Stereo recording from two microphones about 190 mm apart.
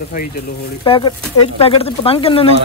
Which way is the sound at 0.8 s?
30° left (ahead or behind).